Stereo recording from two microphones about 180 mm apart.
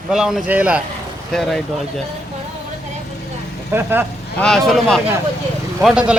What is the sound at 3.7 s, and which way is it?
Speech, 10° right (ahead or behind).